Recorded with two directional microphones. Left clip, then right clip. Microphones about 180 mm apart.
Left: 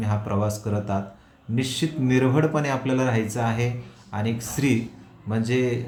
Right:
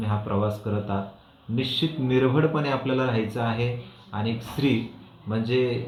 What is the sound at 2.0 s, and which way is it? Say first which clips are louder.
Speech: left 1 dB; 30° left (ahead or behind).